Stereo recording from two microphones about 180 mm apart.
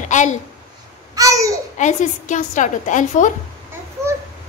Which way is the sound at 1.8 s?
45° left (ahead or behind).